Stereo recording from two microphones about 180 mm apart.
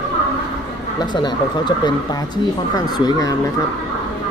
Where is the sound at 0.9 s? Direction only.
25° left (ahead or behind).